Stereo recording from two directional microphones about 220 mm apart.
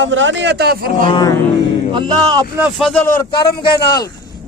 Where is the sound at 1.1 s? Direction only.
20° left (ahead or behind).